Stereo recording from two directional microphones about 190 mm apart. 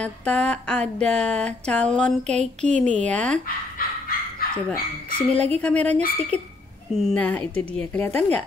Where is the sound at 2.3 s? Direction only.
35° right (ahead or behind).